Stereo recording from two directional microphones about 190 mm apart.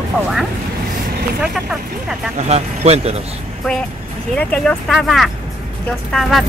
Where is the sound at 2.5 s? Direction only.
35° right (ahead or behind).